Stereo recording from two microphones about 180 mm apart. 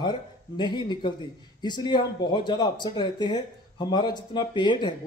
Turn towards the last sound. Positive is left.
turn(degrees=25)  # may be behind; listen again after turning